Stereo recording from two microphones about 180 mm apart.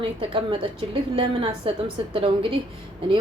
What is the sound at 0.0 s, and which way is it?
A woman's voice, 30° right (ahead or behind).